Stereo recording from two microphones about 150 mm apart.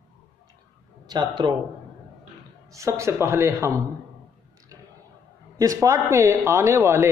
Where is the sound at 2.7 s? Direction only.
20° right (ahead or behind).